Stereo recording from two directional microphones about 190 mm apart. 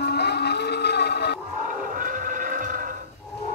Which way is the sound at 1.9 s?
45° right (ahead or behind).